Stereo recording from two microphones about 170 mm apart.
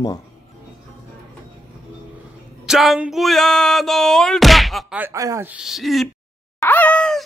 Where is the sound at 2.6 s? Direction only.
Centre (ahead or behind).